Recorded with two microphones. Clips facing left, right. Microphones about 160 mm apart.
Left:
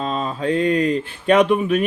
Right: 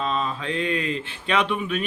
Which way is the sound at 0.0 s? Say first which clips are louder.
Left 4 dB; 45° left (ahead or behind).